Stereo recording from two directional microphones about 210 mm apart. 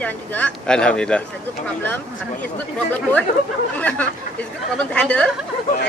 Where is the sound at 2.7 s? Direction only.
5° left (ahead or behind).